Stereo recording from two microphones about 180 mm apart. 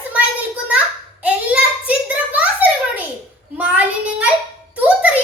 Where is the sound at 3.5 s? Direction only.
10° right (ahead or behind).